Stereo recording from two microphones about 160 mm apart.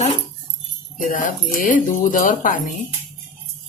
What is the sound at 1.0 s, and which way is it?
Speech, 55° left (ahead or behind).